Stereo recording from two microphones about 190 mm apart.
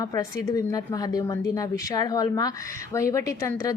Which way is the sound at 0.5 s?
20° left (ahead or behind).